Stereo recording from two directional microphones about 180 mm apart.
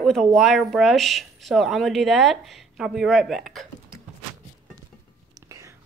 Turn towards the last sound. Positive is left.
turn(degrees=-15)  # may be behind; listen again after turning